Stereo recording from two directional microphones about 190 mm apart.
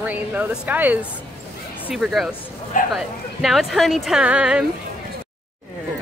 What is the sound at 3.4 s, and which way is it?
A woman's voice, centre (ahead or behind).